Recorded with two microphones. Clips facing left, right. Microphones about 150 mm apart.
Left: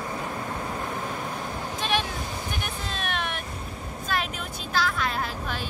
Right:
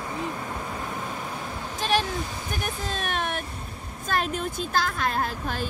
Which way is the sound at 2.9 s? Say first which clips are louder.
Right 2 dB; 45° right (ahead or behind).